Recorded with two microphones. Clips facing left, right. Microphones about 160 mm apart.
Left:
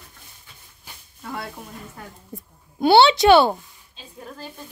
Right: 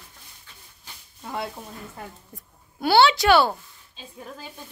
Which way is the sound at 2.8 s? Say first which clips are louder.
Left 4 dB; 25° left (ahead or behind).